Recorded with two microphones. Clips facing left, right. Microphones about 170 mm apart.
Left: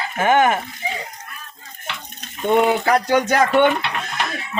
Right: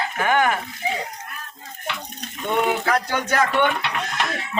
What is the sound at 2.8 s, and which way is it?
Speech, 20° left (ahead or behind).